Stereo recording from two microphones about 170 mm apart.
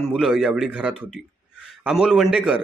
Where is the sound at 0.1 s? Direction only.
5° right (ahead or behind).